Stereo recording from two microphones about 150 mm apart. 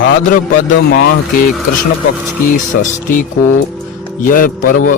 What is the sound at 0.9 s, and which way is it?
Speech, 90° left.